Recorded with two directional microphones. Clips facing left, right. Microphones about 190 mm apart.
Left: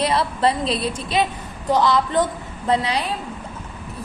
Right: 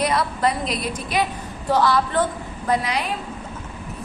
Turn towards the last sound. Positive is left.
turn(degrees=30)  # may be behind; listen again after turning